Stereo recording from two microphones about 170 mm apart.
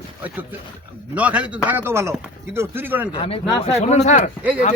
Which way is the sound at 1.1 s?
10° right (ahead or behind).